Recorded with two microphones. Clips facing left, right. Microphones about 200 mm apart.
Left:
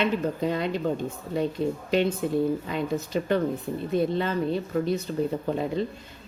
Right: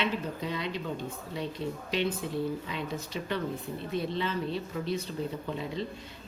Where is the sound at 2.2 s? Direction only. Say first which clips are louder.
Left 7 dB; 50° left (ahead or behind).